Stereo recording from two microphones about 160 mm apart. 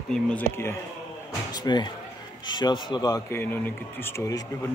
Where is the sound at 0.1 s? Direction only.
10° left (ahead or behind).